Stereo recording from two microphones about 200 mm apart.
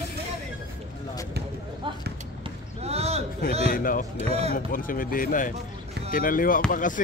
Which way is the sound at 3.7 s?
45° left (ahead or behind).